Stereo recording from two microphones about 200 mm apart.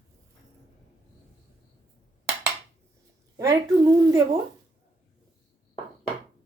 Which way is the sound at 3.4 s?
15° right (ahead or behind).